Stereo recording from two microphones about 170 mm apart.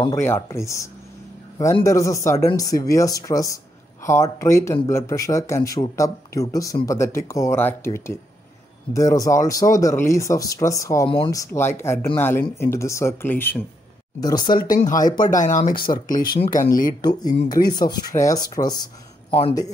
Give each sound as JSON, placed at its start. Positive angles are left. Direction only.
{"t": 0.0, "sound": "speech", "side_deg": 15}
{"t": 14.2, "sound": "speech", "side_deg": 25}
{"t": 15.1, "sound": "speech", "side_deg": 50}
{"t": 15.7, "sound": "speech", "side_deg": 30}
{"t": 16.3, "sound": "speech", "side_deg": 55}
{"t": 17.0, "sound": "speech", "side_deg": 25}